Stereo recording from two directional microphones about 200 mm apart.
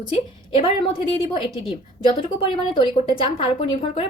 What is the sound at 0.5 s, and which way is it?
A woman's voice, 25° left (ahead or behind).